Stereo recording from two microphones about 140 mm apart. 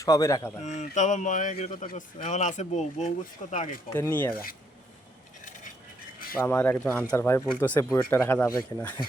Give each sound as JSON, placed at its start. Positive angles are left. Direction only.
{"t": 0.0, "sound": "speech", "side_deg": 25}
{"t": 0.6, "sound": "speech", "side_deg": 55}
{"t": 3.9, "sound": "speech", "side_deg": 15}
{"t": 6.3, "sound": "speech", "side_deg": 10}